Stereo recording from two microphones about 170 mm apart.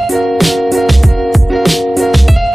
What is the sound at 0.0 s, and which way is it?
Music, centre (ahead or behind).